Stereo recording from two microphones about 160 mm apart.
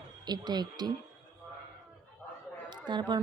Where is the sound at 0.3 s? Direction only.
25° right (ahead or behind).